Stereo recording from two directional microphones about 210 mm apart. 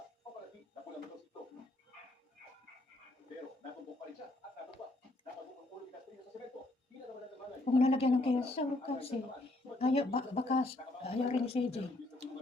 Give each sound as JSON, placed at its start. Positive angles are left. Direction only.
{"t": 7.6, "sound": "speech", "side_deg": 30}